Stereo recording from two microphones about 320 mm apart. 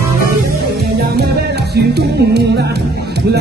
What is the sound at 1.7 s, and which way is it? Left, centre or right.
Music, right.